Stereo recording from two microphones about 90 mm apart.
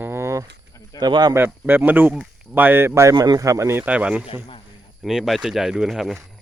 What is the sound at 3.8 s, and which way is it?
Speech, 15° right (ahead or behind).